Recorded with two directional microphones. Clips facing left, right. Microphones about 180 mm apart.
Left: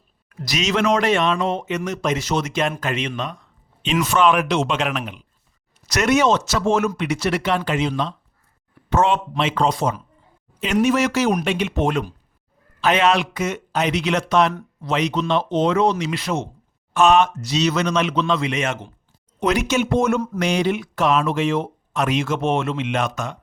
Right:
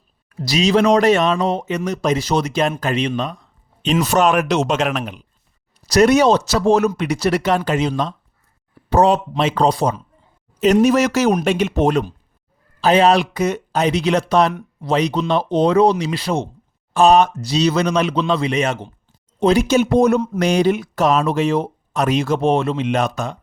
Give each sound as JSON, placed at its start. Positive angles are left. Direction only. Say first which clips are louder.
{"t": 0.3, "sound": "speech", "louder": "right 6 dB", "side_deg": -30}